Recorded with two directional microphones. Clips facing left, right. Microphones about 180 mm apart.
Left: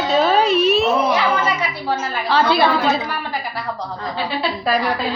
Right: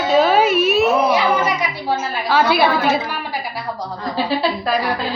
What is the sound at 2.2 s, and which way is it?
Speech, 10° right (ahead or behind).